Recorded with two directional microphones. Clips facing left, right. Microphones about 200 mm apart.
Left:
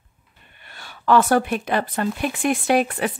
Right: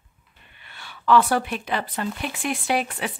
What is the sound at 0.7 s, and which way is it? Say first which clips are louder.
A woman's voice: left 1 dB; 45° left (ahead or behind).